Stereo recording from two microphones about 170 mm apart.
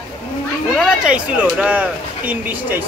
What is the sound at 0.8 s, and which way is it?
Speech, 5° right (ahead or behind).